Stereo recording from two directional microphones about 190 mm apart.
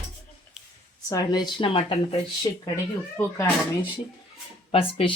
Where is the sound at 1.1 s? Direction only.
20° left (ahead or behind).